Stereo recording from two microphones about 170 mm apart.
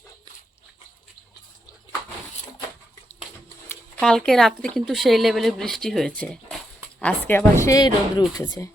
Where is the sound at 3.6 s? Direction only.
5° left (ahead or behind); by 8.7 s 20° left (ahead or behind).